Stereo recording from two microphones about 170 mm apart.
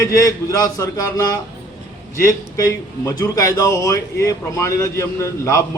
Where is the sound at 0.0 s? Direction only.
20° left (ahead or behind).